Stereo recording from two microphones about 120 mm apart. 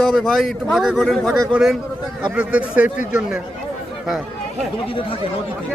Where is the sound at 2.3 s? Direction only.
10° right (ahead or behind).